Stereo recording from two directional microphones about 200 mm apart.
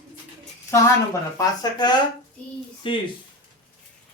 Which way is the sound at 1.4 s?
20° left (ahead or behind).